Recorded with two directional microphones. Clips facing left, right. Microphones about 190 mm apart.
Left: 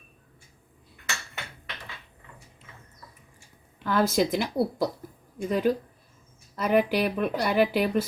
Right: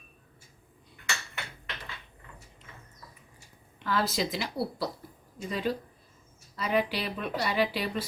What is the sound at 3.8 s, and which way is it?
Speech, 50° left (ahead or behind).